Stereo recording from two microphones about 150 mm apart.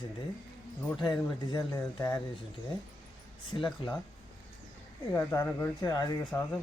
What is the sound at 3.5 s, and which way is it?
Speech, 25° left (ahead or behind).